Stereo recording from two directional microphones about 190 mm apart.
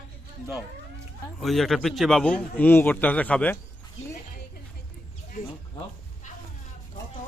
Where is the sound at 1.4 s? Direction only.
Centre (ahead or behind).